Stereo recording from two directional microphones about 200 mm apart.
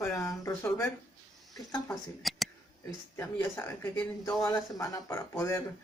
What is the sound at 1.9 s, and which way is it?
Speech, centre (ahead or behind).